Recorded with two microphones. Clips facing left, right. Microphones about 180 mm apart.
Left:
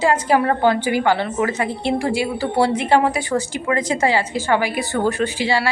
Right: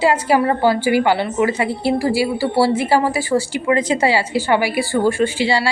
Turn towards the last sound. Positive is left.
turn(degrees=-15)  # may be behind; listen again after turning